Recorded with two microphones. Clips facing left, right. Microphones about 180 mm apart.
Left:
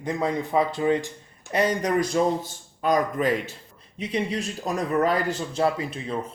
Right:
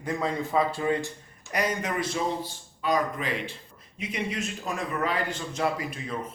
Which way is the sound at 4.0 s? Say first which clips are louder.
Left 5 dB; 30° left (ahead or behind).